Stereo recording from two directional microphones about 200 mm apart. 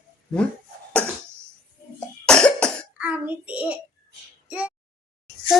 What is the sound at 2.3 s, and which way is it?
Cough, 5° left (ahead or behind).